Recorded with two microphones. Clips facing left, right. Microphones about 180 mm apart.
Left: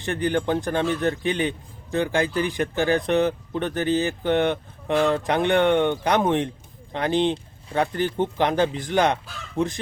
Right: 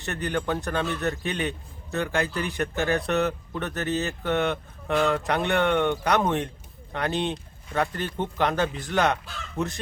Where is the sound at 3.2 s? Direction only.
25° left (ahead or behind).